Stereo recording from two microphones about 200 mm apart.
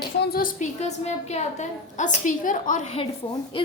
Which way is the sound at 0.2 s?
50° left (ahead or behind).